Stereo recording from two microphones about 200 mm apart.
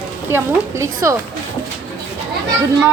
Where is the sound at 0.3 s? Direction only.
15° right (ahead or behind).